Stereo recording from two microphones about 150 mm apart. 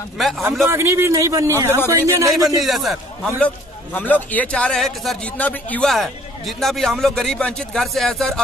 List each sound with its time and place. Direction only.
0.2 s a man's voice: centre (ahead or behind)
0.7 s a man's voice: 15° right (ahead or behind)
2.6 s a man's voice: centre (ahead or behind)